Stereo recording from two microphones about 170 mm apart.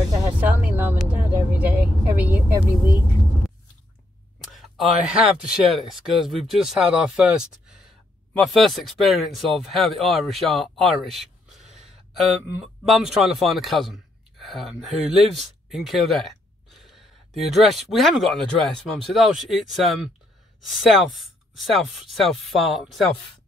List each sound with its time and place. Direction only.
0.1 s music: 20° right (ahead or behind)
0.4 s music: 10° right (ahead or behind)
1.5 s vehicle: 10° right (ahead or behind)
4.4 s speech: centre (ahead or behind)